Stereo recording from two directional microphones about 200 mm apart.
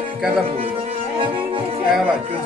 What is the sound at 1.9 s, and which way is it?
Speech, 5° right (ahead or behind).